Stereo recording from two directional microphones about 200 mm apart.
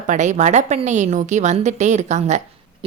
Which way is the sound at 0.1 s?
35° right (ahead or behind).